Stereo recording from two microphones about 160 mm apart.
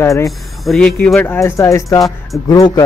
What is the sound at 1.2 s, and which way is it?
Speech, 15° left (ahead or behind).